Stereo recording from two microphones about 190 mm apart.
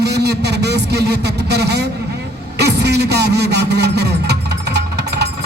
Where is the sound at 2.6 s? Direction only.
60° right (ahead or behind).